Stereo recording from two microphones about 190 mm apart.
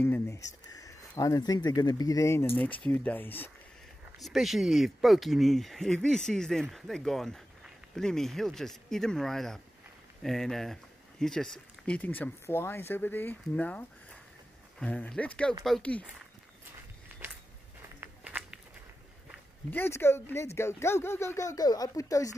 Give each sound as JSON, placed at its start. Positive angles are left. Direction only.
{"t": 0.0, "sound": "speech", "side_deg": 15}
{"t": 4.2, "sound": "speech", "side_deg": 0}
{"t": 17.1, "sound": "a sound", "side_deg": -10}
{"t": 18.0, "sound": "walk", "side_deg": -5}
{"t": 19.7, "sound": "speech", "side_deg": 10}